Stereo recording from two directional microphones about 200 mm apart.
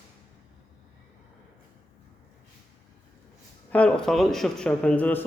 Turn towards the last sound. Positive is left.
turn(degrees=10)  # may be behind; listen again after turning